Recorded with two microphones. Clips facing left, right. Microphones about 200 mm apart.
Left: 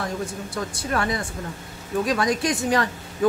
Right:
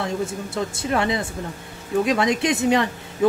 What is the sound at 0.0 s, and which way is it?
Speech, 25° right (ahead or behind).